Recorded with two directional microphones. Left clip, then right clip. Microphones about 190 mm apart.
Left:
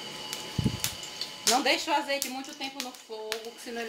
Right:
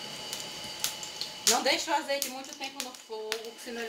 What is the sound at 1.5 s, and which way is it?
Speech, 30° left (ahead or behind).